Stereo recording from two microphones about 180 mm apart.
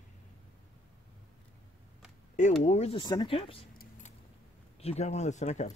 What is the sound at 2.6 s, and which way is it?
Speech, 35° left (ahead or behind).